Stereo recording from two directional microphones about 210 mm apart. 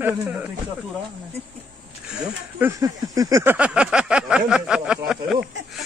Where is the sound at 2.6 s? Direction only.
15° right (ahead or behind).